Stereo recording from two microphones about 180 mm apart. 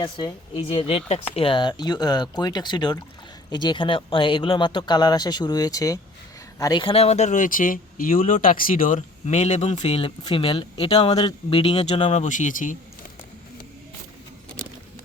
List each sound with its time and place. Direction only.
0.0 s speech: 25° left (ahead or behind); by 12.7 s 45° left (ahead or behind)